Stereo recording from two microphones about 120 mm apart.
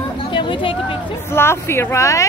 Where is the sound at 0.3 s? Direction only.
45° left (ahead or behind).